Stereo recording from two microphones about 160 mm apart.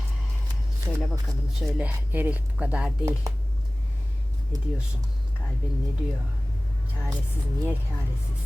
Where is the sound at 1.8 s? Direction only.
10° right (ahead or behind).